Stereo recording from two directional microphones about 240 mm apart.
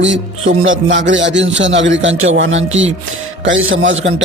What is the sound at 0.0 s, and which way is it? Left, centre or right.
A man's voice, right.